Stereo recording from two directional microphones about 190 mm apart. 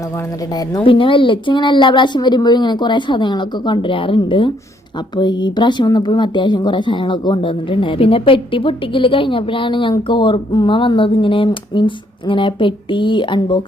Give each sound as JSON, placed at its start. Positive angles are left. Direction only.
{"t": 0.9, "sound": "speech", "side_deg": 25}